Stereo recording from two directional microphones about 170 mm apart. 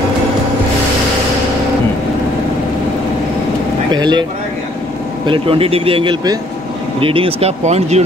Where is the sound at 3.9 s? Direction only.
25° right (ahead or behind).